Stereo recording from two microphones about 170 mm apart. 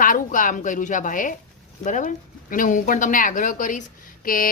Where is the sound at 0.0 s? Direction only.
50° left (ahead or behind).